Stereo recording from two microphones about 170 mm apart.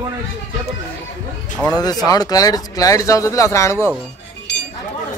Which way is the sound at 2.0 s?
20° left (ahead or behind).